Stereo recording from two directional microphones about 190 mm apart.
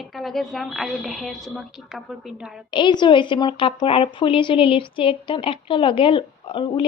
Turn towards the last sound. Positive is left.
turn(degrees=25)  # may be behind; listen again after turning